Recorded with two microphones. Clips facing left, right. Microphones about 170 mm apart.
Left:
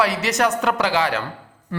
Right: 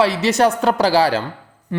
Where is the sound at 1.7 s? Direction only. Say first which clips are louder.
Right 4 dB; 20° right (ahead or behind).